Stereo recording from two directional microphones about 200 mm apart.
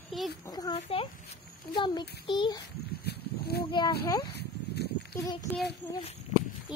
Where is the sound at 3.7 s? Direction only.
20° left (ahead or behind).